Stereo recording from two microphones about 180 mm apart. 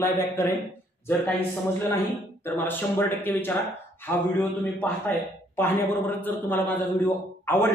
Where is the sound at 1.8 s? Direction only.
10° left (ahead or behind).